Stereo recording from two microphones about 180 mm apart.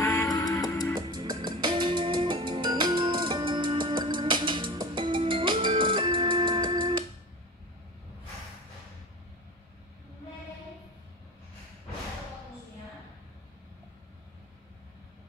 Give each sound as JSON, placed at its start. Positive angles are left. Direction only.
{"t": 0.0, "sound": "music", "side_deg": 20}
{"t": 0.9, "sound": "music", "side_deg": -25}